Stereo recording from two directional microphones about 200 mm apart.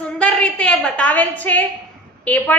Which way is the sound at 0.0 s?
5° left (ahead or behind).